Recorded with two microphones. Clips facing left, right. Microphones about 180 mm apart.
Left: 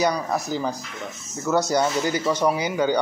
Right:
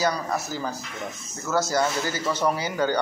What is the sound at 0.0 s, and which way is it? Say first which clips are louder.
A man's voice: left 3 dB; 15° left (ahead or behind).